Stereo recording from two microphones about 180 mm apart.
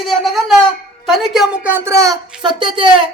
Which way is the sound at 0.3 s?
Centre (ahead or behind).